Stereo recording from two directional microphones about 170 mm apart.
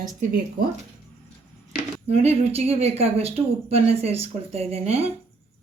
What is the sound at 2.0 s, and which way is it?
Speech, 40° right (ahead or behind).